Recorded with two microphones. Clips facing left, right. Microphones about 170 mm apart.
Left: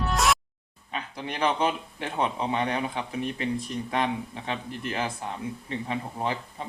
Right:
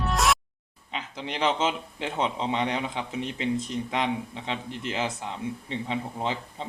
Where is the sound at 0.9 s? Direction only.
20° right (ahead or behind).